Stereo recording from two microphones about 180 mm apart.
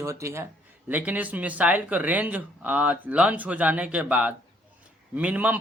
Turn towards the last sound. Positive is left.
turn(degrees=-10)  # may be behind; listen again after turning